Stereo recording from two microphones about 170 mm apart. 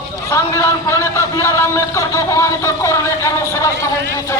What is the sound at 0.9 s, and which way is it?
Speech, 15° left (ahead or behind).